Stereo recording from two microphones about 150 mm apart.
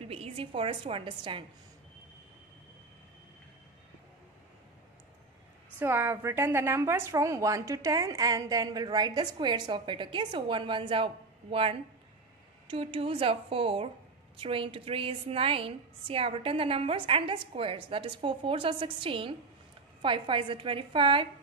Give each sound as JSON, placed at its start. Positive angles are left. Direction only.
{"t": 0.0, "sound": "a woman's voice", "side_deg": -40}
{"t": 5.8, "sound": "a woman's voice", "side_deg": -15}